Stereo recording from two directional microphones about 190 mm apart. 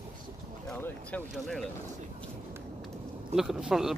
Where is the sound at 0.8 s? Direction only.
5° left (ahead or behind).